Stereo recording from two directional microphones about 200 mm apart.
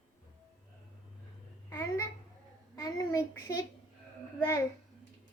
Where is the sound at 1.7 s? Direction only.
15° left (ahead or behind).